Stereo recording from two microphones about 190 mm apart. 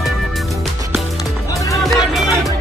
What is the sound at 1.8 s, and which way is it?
Music, centre (ahead or behind).